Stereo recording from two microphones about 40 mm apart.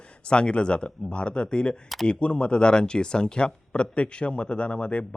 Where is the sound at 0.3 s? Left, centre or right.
Left.